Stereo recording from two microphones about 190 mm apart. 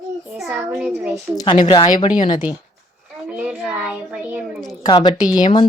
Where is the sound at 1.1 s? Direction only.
20° left (ahead or behind).